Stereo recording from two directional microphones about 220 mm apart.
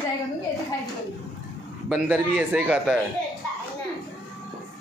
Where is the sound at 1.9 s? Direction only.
Centre (ahead or behind).